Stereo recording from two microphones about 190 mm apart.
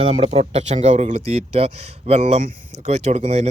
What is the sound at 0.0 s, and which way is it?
Speech, 35° right (ahead or behind).